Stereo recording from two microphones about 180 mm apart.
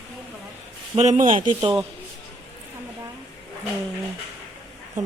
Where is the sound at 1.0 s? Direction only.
40° right (ahead or behind).